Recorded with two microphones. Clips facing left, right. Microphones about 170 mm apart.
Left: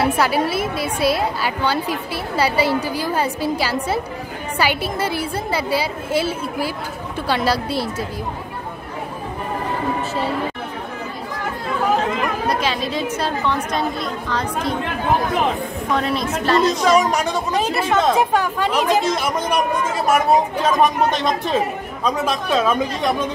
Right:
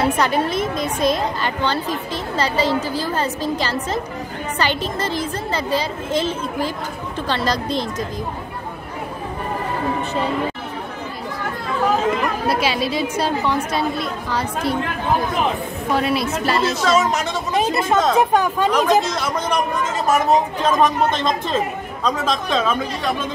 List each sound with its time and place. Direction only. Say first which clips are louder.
0.2 s a woman's voice: even; 5° left (ahead or behind)
12.4 s speech: right 1 dB; 10° right (ahead or behind)
15.9 s speech: right 2 dB; 5° right (ahead or behind)
16.8 s a woman's voice: left 2 dB; 15° left (ahead or behind)